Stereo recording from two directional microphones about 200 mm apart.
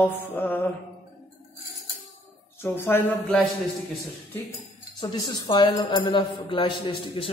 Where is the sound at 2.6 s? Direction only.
10° left (ahead or behind).